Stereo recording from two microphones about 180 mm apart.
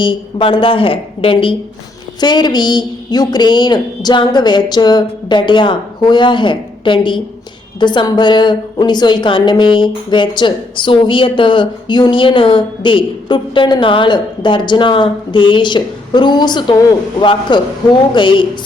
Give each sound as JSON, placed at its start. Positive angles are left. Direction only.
{"t": 0.0, "sound": "a woman's voice", "side_deg": 30}